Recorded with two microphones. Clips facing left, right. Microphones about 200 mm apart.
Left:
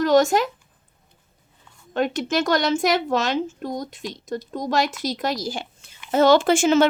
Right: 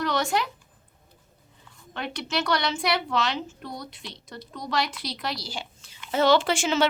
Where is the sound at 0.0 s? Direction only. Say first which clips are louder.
Left 9 dB; 45° left (ahead or behind).